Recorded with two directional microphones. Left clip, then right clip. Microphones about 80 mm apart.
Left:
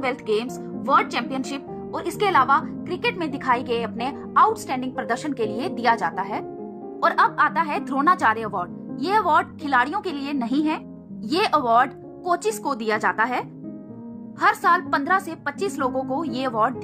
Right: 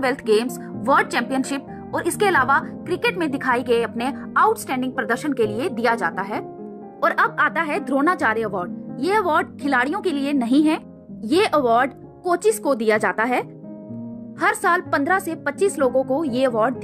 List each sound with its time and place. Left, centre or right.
0.8 s speech: right
7.0 s a woman's voice: right
11.2 s a woman's voice: right